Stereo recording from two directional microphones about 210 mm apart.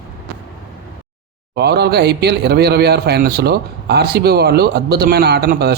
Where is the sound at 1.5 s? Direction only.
50° right (ahead or behind).